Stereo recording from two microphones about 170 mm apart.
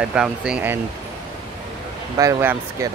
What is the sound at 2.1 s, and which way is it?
Speech, 20° right (ahead or behind).